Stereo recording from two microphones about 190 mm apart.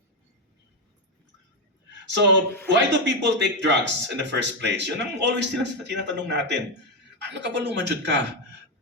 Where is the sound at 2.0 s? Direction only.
70° right (ahead or behind).